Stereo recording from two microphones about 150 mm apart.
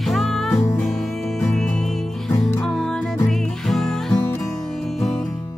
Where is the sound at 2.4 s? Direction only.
5° left (ahead or behind).